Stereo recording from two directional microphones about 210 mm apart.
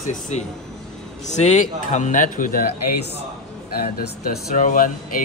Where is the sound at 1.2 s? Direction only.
35° left (ahead or behind).